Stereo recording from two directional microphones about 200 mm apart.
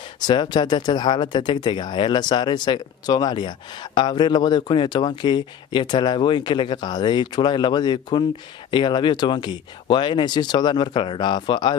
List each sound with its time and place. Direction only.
0.3 s speech: 20° left (ahead or behind)